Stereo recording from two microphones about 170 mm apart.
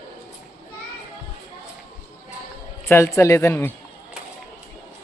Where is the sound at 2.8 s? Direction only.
15° left (ahead or behind).